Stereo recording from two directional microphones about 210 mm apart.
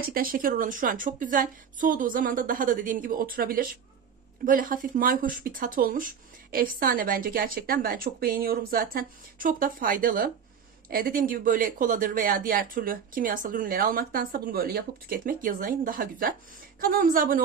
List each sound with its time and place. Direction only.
0.1 s speech: 40° right (ahead or behind)